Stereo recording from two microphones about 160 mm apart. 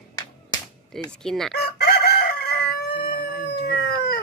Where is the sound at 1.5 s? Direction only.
75° left (ahead or behind).